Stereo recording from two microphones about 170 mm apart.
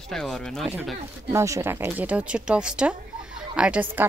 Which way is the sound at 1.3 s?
15° right (ahead or behind).